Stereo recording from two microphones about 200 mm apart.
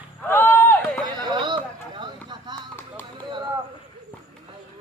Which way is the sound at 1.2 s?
20° right (ahead or behind).